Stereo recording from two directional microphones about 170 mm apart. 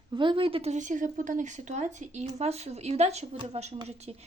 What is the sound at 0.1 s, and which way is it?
Speech, 30° right (ahead or behind).